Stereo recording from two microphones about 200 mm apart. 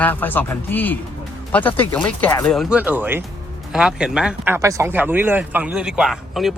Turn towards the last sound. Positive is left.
turn(degrees=0)  # may be behind; listen again after turning